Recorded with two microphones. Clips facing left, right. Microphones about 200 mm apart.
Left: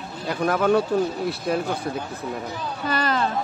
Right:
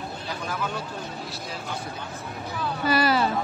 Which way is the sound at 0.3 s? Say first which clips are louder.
Left 13 dB; 60° left (ahead or behind).